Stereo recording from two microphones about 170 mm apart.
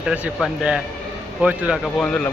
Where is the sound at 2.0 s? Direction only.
5° left (ahead or behind).